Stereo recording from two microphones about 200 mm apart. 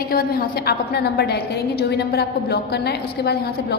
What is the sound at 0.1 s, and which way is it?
A woman's voice, 50° left (ahead or behind).